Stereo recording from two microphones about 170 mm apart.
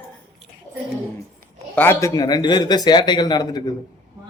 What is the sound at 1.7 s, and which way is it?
A man's voice, 10° left (ahead or behind).